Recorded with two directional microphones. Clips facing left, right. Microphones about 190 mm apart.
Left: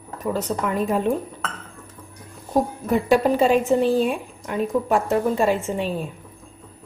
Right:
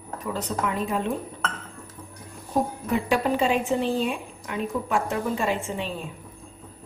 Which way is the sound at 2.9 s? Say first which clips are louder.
Left 6 dB; 40° left (ahead or behind).